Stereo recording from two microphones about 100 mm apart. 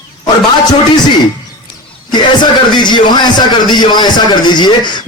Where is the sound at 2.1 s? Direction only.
50° left (ahead or behind).